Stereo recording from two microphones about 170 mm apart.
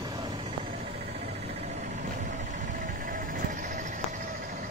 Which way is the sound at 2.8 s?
55° right (ahead or behind).